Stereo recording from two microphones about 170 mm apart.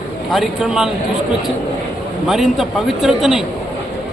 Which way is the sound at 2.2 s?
Centre (ahead or behind).